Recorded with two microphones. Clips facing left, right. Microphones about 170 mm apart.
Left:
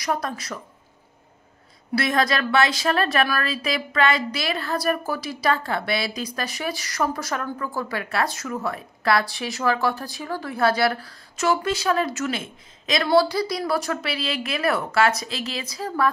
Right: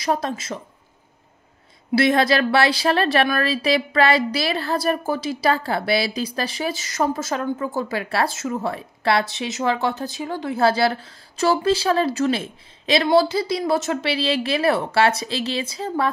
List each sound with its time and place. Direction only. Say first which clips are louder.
0.0 s a woman's voice: right 3 dB; 25° right (ahead or behind)
2.0 s a woman's voice: right 5 dB; 30° right (ahead or behind)